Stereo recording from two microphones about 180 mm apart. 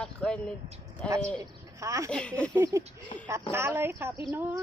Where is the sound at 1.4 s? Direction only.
20° right (ahead or behind).